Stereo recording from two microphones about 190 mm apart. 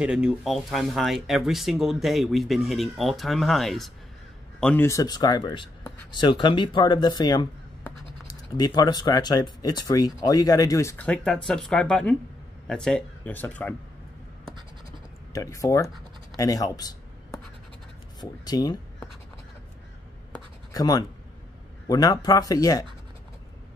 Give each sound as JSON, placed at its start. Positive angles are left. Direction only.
{"t": 0.0, "sound": "speech", "side_deg": -5}
{"t": 4.8, "sound": "speech", "side_deg": 20}
{"t": 15.3, "sound": "speech", "side_deg": 15}
{"t": 18.2, "sound": "speech", "side_deg": 20}
{"t": 20.3, "sound": "writing", "side_deg": 20}
{"t": 21.8, "sound": "speech", "side_deg": 20}